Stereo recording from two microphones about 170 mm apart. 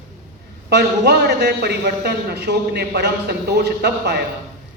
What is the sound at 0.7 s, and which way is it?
A man's voice, 80° right.